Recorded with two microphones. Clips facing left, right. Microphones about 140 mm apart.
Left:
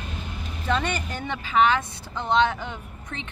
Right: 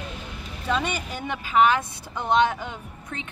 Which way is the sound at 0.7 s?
10° right (ahead or behind).